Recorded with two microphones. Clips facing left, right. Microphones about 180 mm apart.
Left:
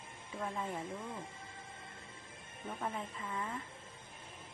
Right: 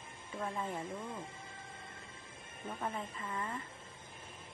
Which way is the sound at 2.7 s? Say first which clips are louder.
Even; centre (ahead or behind).